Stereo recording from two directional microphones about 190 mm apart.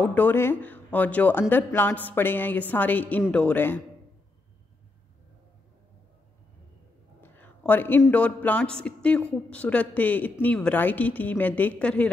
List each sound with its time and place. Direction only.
0.0 s a woman's voice: 10° left (ahead or behind)
7.2 s a sound: 10° left (ahead or behind)
8.0 s a woman's voice: 5° left (ahead or behind)